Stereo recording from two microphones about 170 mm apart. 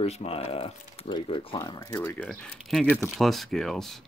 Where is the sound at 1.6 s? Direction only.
20° left (ahead or behind).